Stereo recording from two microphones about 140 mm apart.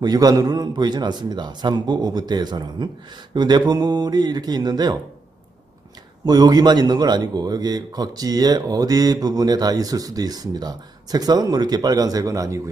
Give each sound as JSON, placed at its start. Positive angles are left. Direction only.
{"t": 0.0, "sound": "a man's voice", "side_deg": -30}
{"t": 6.2, "sound": "a man's voice", "side_deg": -30}